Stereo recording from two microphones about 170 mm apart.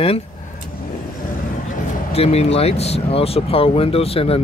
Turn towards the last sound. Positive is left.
turn(degrees=35)  # may be behind; listen again after turning